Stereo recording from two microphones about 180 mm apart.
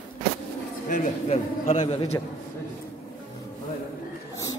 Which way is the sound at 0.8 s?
35° left (ahead or behind).